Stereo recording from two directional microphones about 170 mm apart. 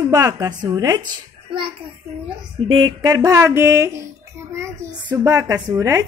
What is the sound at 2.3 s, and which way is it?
Speech, 30° right (ahead or behind).